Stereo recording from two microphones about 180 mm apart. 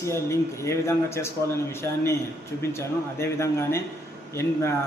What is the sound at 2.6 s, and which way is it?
A man's voice, 15° left (ahead or behind).